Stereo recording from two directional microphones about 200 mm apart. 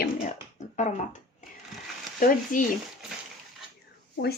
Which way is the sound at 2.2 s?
40° left (ahead or behind).